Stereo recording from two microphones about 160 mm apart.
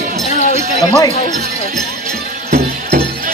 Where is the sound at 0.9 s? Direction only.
25° left (ahead or behind).